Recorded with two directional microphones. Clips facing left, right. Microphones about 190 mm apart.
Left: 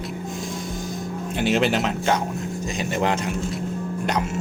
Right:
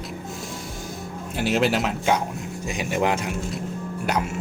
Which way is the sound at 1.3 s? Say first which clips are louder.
Left 1 dB; 5° right (ahead or behind).